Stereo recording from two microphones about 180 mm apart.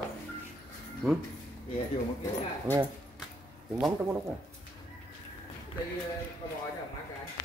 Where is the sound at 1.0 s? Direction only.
Centre (ahead or behind).